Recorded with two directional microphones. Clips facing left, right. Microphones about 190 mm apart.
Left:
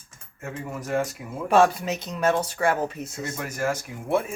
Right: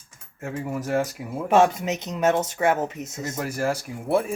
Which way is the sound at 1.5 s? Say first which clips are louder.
Even; 20° right (ahead or behind).